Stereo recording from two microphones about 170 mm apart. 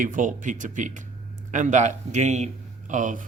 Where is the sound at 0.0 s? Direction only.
50° right (ahead or behind).